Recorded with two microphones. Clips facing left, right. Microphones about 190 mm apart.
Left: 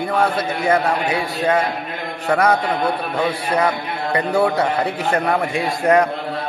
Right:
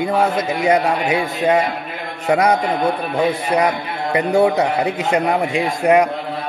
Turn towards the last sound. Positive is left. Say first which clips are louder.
# right 2 dB
turn(degrees=-15)  # may be behind; listen again after turning